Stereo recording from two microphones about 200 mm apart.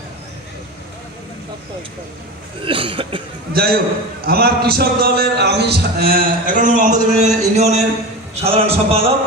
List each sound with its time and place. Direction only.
2.6 s cough: 25° right (ahead or behind)
3.5 s a man's voice: 50° right (ahead or behind); by 9.0 s 30° right (ahead or behind)